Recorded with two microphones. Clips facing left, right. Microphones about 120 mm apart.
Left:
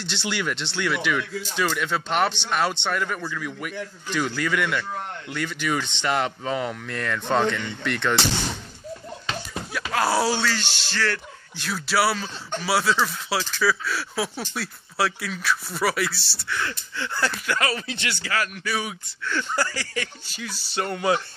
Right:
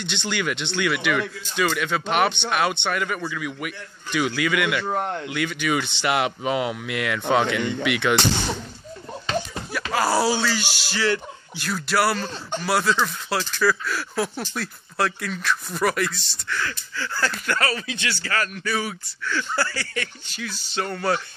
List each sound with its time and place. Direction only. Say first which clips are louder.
0.0 s speech: right 1 dB; 5° left (ahead or behind)
4.8 s speech: right 7 dB; 60° right (ahead or behind)
5.3 s speech: even; 5° right (ahead or behind)
9.9 s speech: right 1 dB; centre (ahead or behind)
16.5 s speech: even; 20° left (ahead or behind)
17.7 s speech: right 1 dB; 25° left (ahead or behind)
18.2 s speech: even; 10° left (ahead or behind)